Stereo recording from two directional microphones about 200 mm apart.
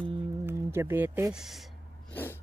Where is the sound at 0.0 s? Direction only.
10° right (ahead or behind).